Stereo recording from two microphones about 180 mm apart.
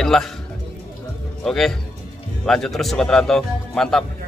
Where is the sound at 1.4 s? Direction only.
Centre (ahead or behind).